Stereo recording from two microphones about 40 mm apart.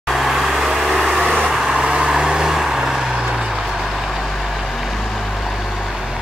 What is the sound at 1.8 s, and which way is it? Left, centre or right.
Vehicle, centre.